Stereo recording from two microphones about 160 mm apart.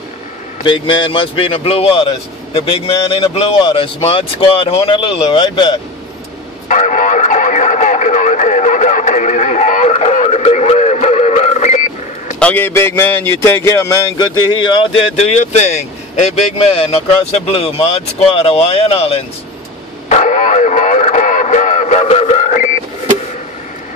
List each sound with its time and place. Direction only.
0.7 s speech: 30° left (ahead or behind)
6.7 s radio: 50° left (ahead or behind)
12.4 s speech: 10° left (ahead or behind); by 19.2 s 40° left (ahead or behind)
20.1 s radio: 50° left (ahead or behind)